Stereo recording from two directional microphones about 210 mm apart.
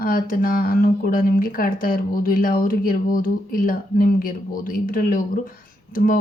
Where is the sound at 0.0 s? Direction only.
45° left (ahead or behind).